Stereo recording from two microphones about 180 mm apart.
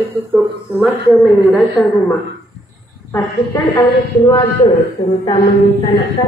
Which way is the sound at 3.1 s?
20° left (ahead or behind).